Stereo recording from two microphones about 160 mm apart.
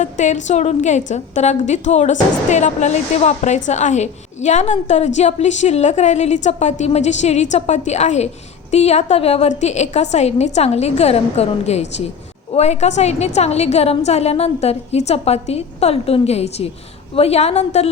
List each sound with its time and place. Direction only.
0.0 s a woman's voice: 50° left (ahead or behind)